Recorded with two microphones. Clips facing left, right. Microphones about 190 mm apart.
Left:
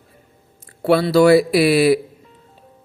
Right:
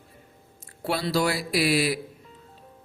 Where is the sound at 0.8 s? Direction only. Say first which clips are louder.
Left 12 dB; 65° left (ahead or behind).